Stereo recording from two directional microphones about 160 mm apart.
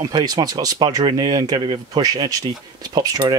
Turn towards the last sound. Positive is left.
turn(degrees=-25)  # may be behind; listen again after turning